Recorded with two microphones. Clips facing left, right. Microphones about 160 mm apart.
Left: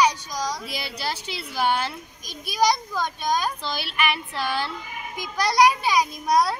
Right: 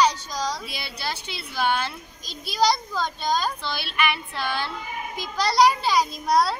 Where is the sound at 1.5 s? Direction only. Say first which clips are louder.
Left 1 dB; 10° left (ahead or behind).